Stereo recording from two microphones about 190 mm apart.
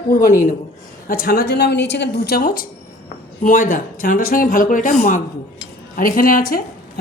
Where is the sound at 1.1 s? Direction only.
50° left (ahead or behind).